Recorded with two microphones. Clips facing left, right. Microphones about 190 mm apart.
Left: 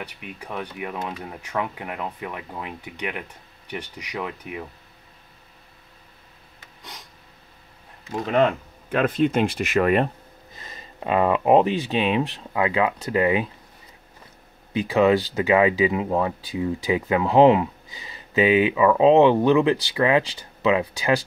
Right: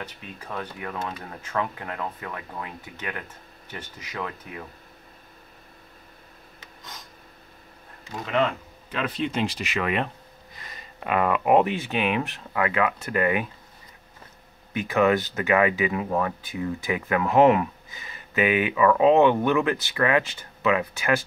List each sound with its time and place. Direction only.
0.0 s speech: 15° left (ahead or behind)
8.9 s speech: 50° left (ahead or behind)
10.5 s speech: 25° left (ahead or behind)
14.7 s speech: 20° left (ahead or behind)